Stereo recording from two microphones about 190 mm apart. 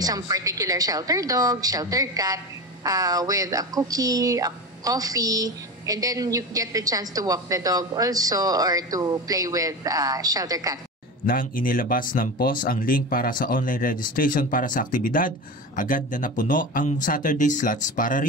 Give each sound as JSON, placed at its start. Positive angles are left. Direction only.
{"t": 0.0, "sound": "a woman's voice", "side_deg": -20}
{"t": 11.2, "sound": "speech", "side_deg": 45}